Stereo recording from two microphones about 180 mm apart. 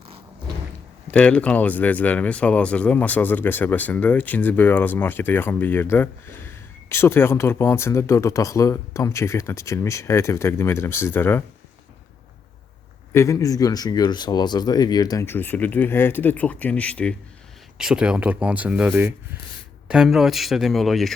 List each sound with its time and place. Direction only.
1.1 s speech: 5° left (ahead or behind)
13.1 s speech: 15° left (ahead or behind)
17.7 s speech: 5° right (ahead or behind)